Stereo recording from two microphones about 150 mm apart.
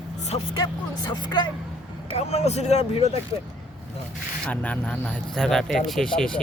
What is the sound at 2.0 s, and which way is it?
Speech, 45° left (ahead or behind).